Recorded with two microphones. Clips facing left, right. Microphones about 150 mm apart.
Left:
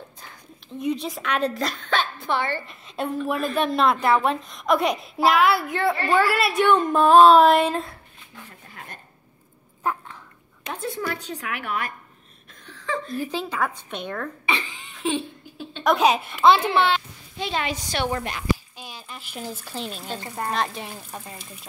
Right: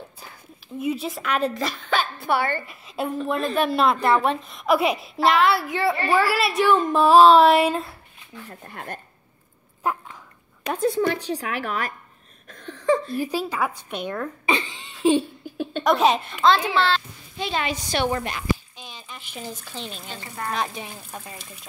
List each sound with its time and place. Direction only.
0.7 s a woman's voice: 5° right (ahead or behind)
8.6 s speech: 60° right (ahead or behind)
9.8 s a woman's voice: 10° right (ahead or behind)
10.8 s a woman's voice: 30° right (ahead or behind)
12.8 s a sound: 40° right (ahead or behind)
13.1 s a woman's voice: 10° right (ahead or behind)
14.4 s laughter: 35° right (ahead or behind)
15.8 s a child's voice: centre (ahead or behind)
17.4 s a woman's voice: 5° right (ahead or behind)
18.8 s a child's voice: 5° left (ahead or behind)
20.1 s speech: 30° left (ahead or behind)
20.5 s a child's voice: centre (ahead or behind)